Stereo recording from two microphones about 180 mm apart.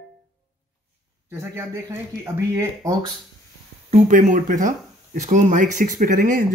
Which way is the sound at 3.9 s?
45° right (ahead or behind).